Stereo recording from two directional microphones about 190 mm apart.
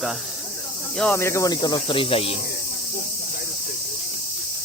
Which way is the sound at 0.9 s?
10° left (ahead or behind).